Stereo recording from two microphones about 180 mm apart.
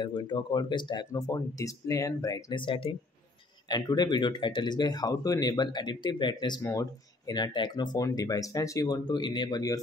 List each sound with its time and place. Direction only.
0.0 s speech: 25° left (ahead or behind)